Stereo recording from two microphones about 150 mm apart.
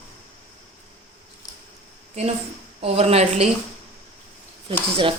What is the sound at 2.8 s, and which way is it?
Speech, 40° right (ahead or behind).